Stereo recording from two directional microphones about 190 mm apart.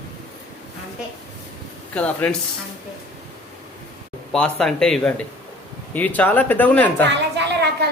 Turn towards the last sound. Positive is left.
turn(degrees=-65)  # may be behind; listen again after turning